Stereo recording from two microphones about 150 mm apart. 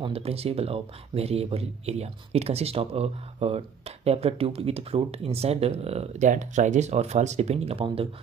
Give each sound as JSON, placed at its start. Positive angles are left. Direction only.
{"t": 0.0, "sound": "speech", "side_deg": -40}